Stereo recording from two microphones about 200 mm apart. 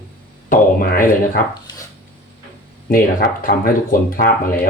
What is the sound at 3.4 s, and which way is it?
Speech, 45° left (ahead or behind).